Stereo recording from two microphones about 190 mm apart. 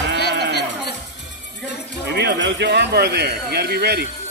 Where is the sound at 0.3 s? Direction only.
60° right (ahead or behind).